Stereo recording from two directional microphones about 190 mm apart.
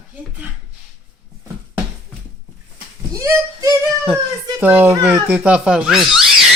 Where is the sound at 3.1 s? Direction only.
15° right (ahead or behind).